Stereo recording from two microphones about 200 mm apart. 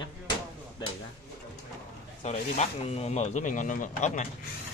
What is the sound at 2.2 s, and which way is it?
Speech, 35° left (ahead or behind).